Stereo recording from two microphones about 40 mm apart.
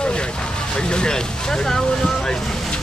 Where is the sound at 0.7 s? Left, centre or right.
Left.